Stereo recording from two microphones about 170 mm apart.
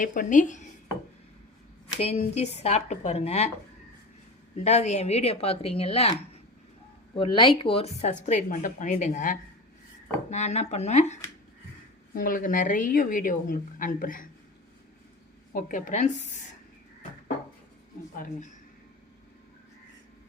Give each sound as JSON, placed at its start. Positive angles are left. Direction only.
{"t": 0.0, "sound": "a woman's voice", "side_deg": 50}
{"t": 1.9, "sound": "speech", "side_deg": 35}
{"t": 4.5, "sound": "speech", "side_deg": 40}
{"t": 7.2, "sound": "speech", "side_deg": 30}
{"t": 8.3, "sound": "a woman's voice", "side_deg": 50}
{"t": 12.1, "sound": "a woman's voice", "side_deg": 55}
{"t": 15.5, "sound": "a woman's voice", "side_deg": 50}